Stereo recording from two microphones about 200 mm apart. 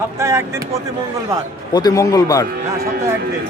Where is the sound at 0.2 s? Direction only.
15° right (ahead or behind).